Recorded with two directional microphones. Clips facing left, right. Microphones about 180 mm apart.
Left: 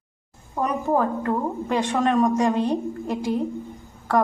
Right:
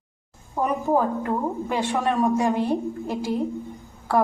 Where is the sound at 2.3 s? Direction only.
15° left (ahead or behind).